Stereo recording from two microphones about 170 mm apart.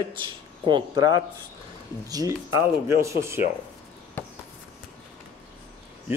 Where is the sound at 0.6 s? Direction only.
25° right (ahead or behind).